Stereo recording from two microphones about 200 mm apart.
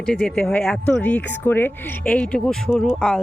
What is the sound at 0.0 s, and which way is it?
Speech, 5° left (ahead or behind).